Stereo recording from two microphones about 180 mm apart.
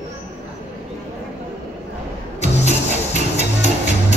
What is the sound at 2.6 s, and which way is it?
Music, 40° left (ahead or behind).